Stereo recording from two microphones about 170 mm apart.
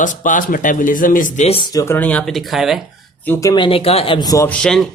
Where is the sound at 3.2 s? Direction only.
15° left (ahead or behind).